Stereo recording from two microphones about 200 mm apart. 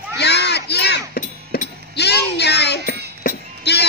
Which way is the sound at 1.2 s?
40° left (ahead or behind).